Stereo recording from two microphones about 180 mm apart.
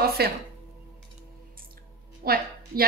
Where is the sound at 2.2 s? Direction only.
55° right (ahead or behind).